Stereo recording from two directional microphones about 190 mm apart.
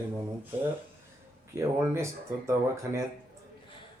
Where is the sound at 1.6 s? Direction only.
15° right (ahead or behind).